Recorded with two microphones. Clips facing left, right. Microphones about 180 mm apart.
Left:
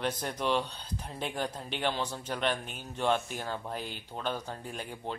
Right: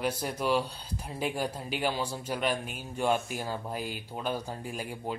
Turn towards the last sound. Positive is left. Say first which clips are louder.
# right 3 dB
turn(degrees=-10)  # may be behind; listen again after turning